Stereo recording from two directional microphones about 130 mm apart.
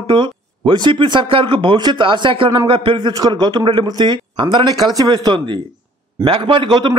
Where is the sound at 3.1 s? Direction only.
30° right (ahead or behind).